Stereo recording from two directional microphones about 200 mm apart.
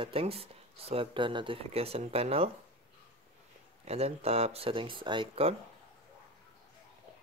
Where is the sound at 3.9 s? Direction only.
30° right (ahead or behind).